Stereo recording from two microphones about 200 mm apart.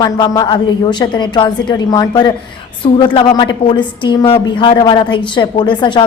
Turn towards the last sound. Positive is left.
turn(degrees=25)  # may be behind; listen again after turning